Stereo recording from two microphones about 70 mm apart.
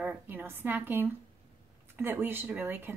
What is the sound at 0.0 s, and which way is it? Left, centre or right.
A woman's voice, right.